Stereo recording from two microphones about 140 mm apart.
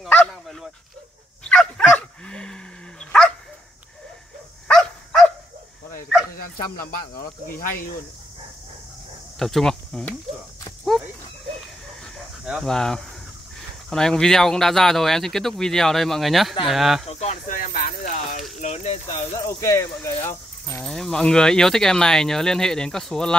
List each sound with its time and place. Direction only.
0.0 s bow-wow: 5° left (ahead or behind)
1.4 s dog: 5° left (ahead or behind)
4.6 s dog: 5° left (ahead or behind)
6.4 s speech: 85° left
9.4 s speech: 5° left (ahead or behind)
12.4 s speech: centre (ahead or behind)
17.0 s a sound: 50° left (ahead or behind)
17.5 s a sound: 75° left (ahead or behind)
18.6 s speech: 50° left (ahead or behind)
19.1 s speech: 20° left (ahead or behind)
20.8 s speech: 5° left (ahead or behind)